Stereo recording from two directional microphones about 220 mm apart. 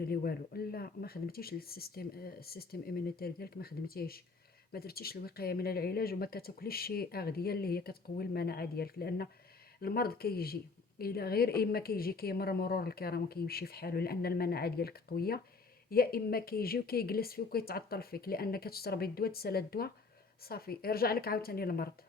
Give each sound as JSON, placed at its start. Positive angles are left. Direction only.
{"t": 0.0, "sound": "a woman's voice", "side_deg": 45}